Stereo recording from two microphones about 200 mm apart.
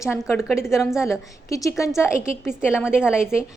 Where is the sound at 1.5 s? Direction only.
15° left (ahead or behind).